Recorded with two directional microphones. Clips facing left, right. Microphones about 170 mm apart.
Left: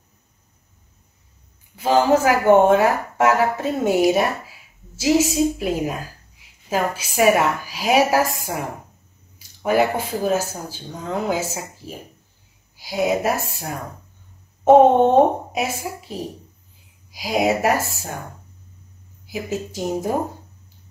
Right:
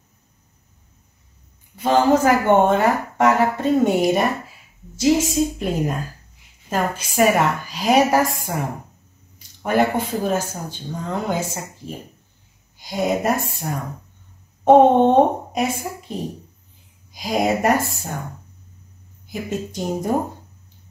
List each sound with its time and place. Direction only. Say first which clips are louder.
1.8 s a woman's voice: even; 10° left (ahead or behind)
19.2 s speech: even; 5° left (ahead or behind)